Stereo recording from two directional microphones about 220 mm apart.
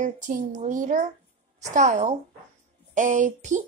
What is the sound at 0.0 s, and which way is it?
A woman's voice, 35° right (ahead or behind).